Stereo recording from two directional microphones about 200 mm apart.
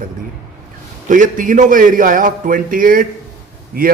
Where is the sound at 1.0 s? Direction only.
40° right (ahead or behind).